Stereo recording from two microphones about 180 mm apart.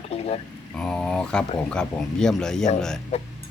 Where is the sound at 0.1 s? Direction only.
35° left (ahead or behind).